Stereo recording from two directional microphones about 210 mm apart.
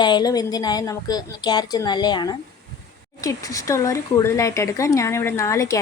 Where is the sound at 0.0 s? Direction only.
20° left (ahead or behind).